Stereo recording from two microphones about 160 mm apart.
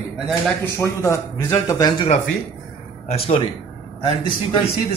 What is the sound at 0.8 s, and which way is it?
Speech, 15° left (ahead or behind).